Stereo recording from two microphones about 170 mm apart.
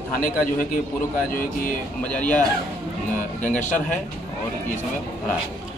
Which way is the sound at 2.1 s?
10° left (ahead or behind).